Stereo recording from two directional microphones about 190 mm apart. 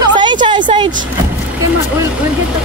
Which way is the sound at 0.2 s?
25° right (ahead or behind).